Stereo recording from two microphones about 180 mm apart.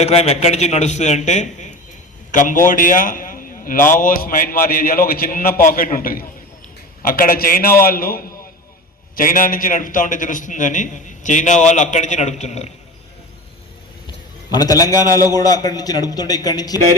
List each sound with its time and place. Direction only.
0.0 s a man's voice: 35° left (ahead or behind)
14.5 s a man's voice: 20° left (ahead or behind)